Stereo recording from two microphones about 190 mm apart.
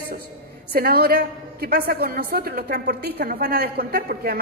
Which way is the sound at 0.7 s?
55° right (ahead or behind).